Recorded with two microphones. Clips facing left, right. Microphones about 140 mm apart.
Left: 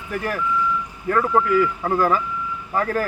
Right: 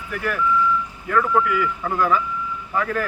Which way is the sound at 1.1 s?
35° left (ahead or behind).